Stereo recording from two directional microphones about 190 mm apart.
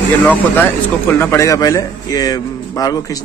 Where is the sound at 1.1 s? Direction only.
15° left (ahead or behind).